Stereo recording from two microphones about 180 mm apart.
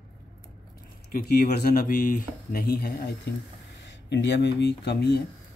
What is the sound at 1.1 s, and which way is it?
Speech, 55° left (ahead or behind).